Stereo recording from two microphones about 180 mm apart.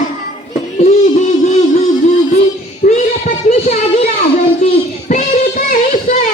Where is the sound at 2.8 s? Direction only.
45° left (ahead or behind).